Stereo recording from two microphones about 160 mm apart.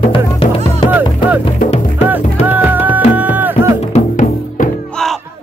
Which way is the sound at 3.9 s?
50° left (ahead or behind).